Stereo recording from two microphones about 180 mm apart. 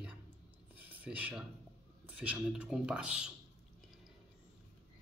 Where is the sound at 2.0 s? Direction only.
5° right (ahead or behind).